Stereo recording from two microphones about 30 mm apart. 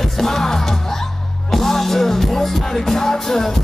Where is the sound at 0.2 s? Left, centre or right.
Centre.